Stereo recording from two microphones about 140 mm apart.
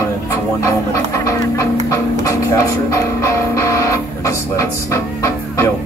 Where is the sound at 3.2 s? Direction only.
20° left (ahead or behind).